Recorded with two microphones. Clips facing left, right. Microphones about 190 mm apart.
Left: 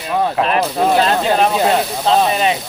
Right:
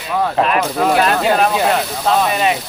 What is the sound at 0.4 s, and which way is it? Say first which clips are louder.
Speech: even; 30° left (ahead or behind).